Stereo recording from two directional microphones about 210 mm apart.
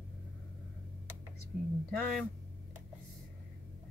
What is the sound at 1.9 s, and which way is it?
Speech, 5° left (ahead or behind).